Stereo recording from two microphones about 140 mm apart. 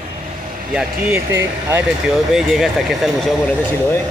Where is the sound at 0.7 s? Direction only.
15° right (ahead or behind).